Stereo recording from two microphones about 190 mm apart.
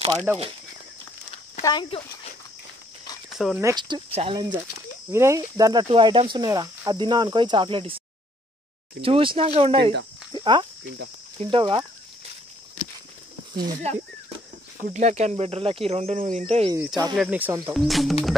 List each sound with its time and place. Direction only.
0.3 s speech: 10° right (ahead or behind)
1.6 s speech: 20° left (ahead or behind)
3.3 s speech: centre (ahead or behind)
3.6 s speech: 25° right (ahead or behind)
9.0 s speech: 30° right (ahead or behind)
10.3 s a sound: 25° right (ahead or behind)
11.3 s speech: 25° right (ahead or behind)
14.8 s speech: 40° right (ahead or behind)
16.7 s speech: 20° right (ahead or behind)
17.1 s speech: 5° right (ahead or behind)
17.7 s speech: centre (ahead or behind)